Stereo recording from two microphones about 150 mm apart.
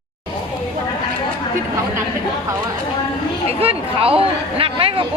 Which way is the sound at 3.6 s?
40° right (ahead or behind).